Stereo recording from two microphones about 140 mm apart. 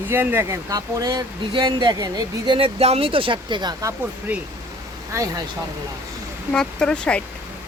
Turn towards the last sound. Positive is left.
turn(degrees=5)  # may be behind; listen again after turning